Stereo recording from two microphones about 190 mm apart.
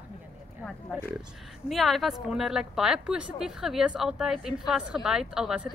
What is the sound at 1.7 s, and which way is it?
A woman's voice, centre (ahead or behind).